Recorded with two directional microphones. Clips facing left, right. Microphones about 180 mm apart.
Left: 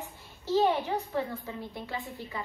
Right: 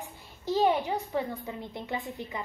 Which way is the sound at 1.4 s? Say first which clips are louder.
Right 1 dB; 20° right (ahead or behind).